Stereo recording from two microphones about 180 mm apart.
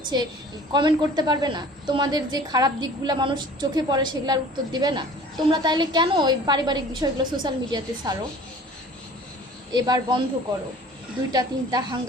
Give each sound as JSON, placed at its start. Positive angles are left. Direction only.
{"t": 0.1, "sound": "a woman's voice", "side_deg": -25}
{"t": 9.7, "sound": "a woman's voice", "side_deg": -25}
{"t": 11.3, "sound": "a woman's voice", "side_deg": -20}